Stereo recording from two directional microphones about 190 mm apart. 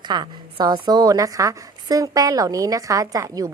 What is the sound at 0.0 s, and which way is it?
A woman's voice, 25° right (ahead or behind).